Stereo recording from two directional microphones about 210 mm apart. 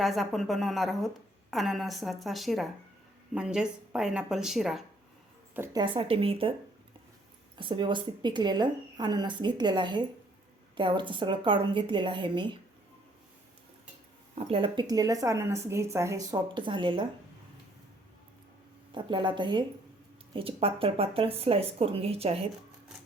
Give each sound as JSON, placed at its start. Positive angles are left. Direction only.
{"t": 0.0, "sound": "a woman's voice", "side_deg": 0}
{"t": 5.5, "sound": "a woman's voice", "side_deg": -20}
{"t": 7.5, "sound": "a woman's voice", "side_deg": -20}
{"t": 14.3, "sound": "a woman's voice", "side_deg": -25}
{"t": 18.9, "sound": "a woman's voice", "side_deg": -20}